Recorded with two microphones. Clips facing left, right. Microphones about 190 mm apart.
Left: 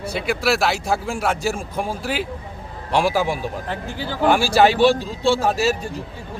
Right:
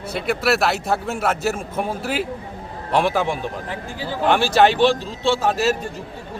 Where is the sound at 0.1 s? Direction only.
Centre (ahead or behind).